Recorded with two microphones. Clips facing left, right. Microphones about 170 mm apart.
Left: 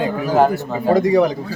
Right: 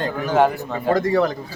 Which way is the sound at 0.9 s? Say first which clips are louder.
Left 4 dB; 15° left (ahead or behind).